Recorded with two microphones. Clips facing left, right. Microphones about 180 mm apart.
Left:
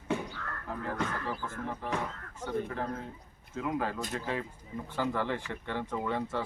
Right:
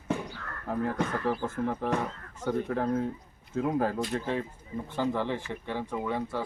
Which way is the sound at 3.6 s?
40° right (ahead or behind).